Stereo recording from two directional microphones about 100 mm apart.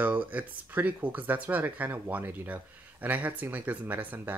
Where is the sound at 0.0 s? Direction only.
15° right (ahead or behind).